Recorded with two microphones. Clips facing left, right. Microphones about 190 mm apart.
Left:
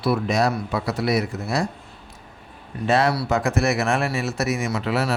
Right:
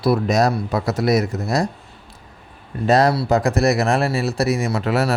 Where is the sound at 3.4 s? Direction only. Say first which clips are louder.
Right 4 dB; 35° right (ahead or behind).